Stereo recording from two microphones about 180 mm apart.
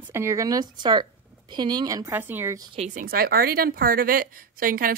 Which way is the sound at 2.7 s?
45° right (ahead or behind).